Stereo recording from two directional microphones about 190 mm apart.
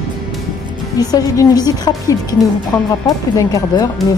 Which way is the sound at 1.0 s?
20° left (ahead or behind).